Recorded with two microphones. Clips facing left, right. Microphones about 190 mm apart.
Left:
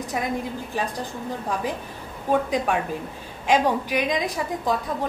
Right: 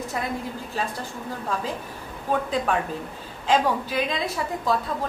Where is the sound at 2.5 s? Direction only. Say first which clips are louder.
Left 1 dB; 15° left (ahead or behind).